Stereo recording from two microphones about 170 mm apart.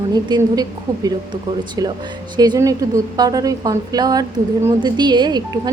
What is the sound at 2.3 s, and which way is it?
A woman's voice, 25° right (ahead or behind).